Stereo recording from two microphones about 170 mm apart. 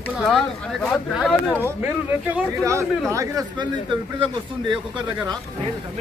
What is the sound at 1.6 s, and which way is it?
Speech, 10° right (ahead or behind).